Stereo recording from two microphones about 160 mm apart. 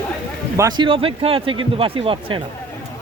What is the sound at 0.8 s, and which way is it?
Speech, 35° right (ahead or behind).